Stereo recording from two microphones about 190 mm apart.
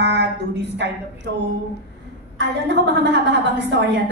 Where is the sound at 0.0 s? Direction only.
65° right (ahead or behind).